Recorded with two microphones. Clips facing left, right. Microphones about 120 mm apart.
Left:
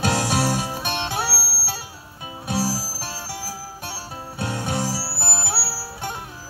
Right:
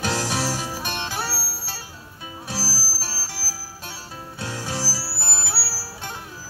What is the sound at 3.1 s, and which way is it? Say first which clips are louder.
Music: left 4 dB; 20° left (ahead or behind).